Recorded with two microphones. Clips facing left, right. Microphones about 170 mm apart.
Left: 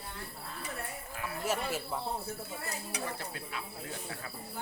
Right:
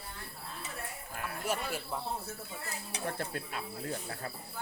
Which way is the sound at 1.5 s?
5° left (ahead or behind).